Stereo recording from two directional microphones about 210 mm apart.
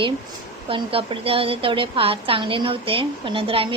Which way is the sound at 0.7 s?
25° right (ahead or behind).